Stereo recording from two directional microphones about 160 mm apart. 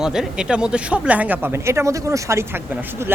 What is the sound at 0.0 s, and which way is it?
Speech, 5° right (ahead or behind).